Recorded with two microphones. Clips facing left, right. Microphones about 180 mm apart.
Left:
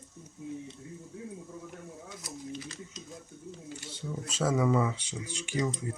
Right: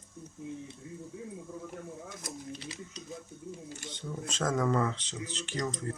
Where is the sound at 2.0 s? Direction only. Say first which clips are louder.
Even; 45° right (ahead or behind).